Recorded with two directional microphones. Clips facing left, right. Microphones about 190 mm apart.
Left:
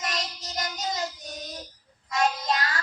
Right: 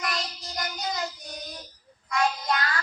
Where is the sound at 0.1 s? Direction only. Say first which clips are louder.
Even; 20° left (ahead or behind).